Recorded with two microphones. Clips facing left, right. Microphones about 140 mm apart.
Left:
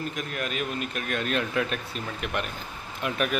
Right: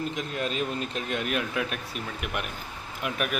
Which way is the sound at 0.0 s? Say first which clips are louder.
Right 2 dB; 20° right (ahead or behind).